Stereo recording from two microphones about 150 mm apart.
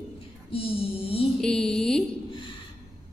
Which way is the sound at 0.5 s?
40° left (ahead or behind).